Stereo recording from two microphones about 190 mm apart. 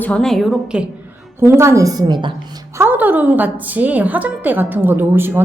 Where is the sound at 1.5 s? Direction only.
15° right (ahead or behind).